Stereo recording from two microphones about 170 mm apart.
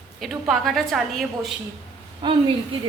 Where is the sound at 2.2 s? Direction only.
25° right (ahead or behind).